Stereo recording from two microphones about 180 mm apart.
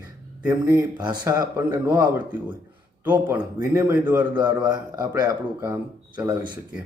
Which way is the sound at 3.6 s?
15° right (ahead or behind).